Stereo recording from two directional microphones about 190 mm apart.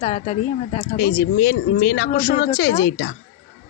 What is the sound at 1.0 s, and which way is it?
Speech, 55° left (ahead or behind).